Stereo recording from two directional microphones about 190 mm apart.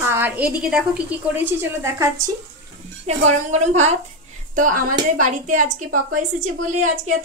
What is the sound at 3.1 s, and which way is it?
A woman's voice, 35° right (ahead or behind).